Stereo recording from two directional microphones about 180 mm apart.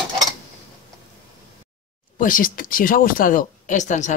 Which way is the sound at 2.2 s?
50° left (ahead or behind).